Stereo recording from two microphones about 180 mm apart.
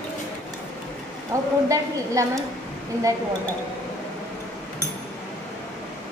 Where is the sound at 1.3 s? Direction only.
15° right (ahead or behind).